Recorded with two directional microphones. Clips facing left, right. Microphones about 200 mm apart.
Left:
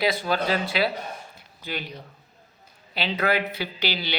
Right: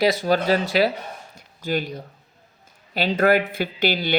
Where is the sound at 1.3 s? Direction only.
45° right (ahead or behind).